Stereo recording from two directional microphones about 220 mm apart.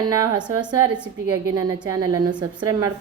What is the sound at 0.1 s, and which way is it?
Speech, 15° right (ahead or behind).